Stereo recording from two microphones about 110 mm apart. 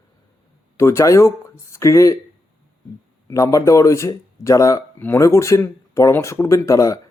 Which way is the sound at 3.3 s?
30° left (ahead or behind).